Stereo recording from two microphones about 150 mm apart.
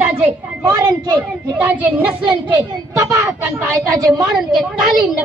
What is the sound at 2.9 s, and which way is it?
A woman's voice, 20° right (ahead or behind).